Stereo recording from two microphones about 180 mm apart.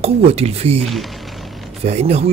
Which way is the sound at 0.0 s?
35° right (ahead or behind).